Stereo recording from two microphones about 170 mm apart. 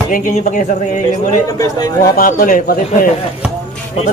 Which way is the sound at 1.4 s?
20° left (ahead or behind).